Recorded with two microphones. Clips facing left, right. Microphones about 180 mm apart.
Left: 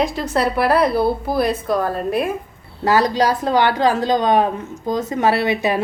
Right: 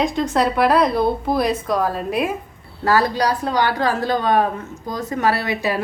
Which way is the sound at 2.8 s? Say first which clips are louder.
Left 2 dB; 20° left (ahead or behind).